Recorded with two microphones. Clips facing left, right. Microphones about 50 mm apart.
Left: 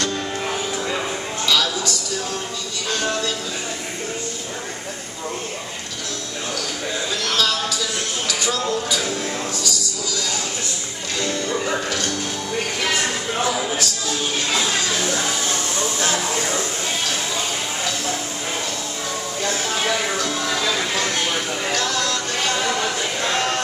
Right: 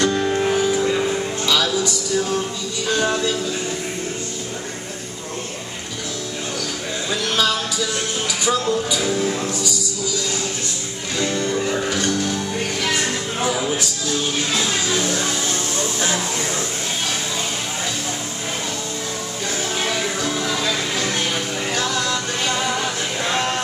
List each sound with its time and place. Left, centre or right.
0.0 s music: centre
1.4 s music: centre
8.3 s speech: centre
11.1 s music: centre
21.7 s music: centre